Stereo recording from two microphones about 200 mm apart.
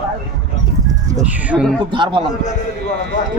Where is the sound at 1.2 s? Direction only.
5° right (ahead or behind).